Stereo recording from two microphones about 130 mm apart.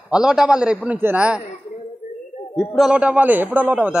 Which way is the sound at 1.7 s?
55° left (ahead or behind).